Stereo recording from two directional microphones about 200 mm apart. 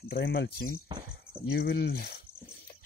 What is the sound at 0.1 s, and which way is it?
Speech, 60° left (ahead or behind).